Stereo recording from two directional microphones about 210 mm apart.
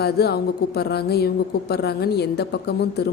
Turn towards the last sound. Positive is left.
turn(degrees=50)  # may be behind; listen again after turning